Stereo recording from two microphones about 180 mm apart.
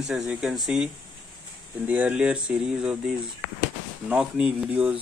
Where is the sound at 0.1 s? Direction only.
Centre (ahead or behind).